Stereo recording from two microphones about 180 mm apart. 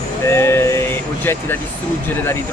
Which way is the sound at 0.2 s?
15° left (ahead or behind).